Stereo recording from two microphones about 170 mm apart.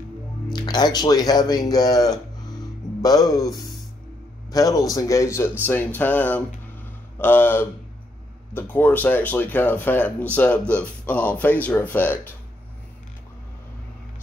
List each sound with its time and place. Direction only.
0.5 s speech: 25° left (ahead or behind)